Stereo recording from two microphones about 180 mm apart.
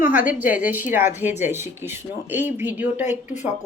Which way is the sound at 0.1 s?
10° right (ahead or behind).